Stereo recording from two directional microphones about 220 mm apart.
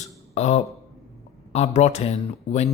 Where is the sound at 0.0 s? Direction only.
30° left (ahead or behind).